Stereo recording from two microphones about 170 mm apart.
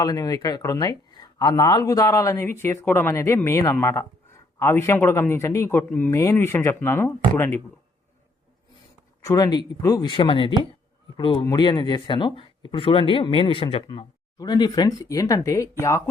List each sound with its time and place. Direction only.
0.0 s speech: 20° left (ahead or behind)
9.2 s speech: 20° left (ahead or behind)